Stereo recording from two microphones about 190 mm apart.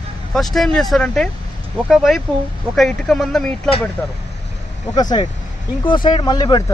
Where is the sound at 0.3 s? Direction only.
Centre (ahead or behind).